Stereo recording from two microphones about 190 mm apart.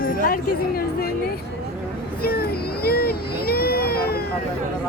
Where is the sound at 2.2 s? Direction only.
55° left (ahead or behind).